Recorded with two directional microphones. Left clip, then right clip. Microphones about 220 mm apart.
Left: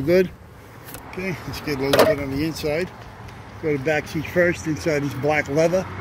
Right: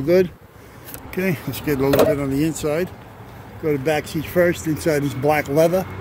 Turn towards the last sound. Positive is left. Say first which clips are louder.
# right 2 dB
turn(degrees=-10)  # may be behind; listen again after turning